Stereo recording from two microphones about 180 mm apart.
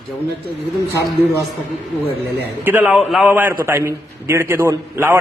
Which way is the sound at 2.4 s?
10° right (ahead or behind).